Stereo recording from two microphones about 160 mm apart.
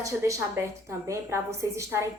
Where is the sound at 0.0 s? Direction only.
20° right (ahead or behind).